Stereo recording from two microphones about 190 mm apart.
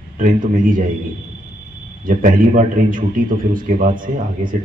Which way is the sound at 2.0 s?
45° right (ahead or behind).